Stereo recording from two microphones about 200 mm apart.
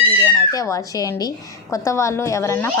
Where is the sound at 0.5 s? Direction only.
15° left (ahead or behind).